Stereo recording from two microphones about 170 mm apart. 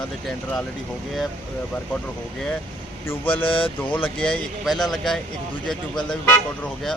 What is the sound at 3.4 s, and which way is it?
Speech, 30° left (ahead or behind).